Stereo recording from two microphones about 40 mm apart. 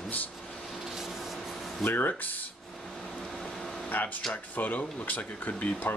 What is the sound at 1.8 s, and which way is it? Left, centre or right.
Speech, left.